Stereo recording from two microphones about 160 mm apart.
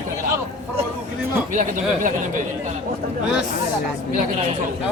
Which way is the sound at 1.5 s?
50° right (ahead or behind).